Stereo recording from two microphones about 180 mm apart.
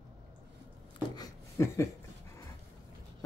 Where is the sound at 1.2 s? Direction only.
15° left (ahead or behind).